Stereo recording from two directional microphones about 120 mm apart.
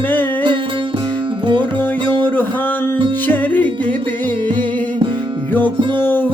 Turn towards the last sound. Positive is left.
turn(degrees=15)  # may be behind; listen again after turning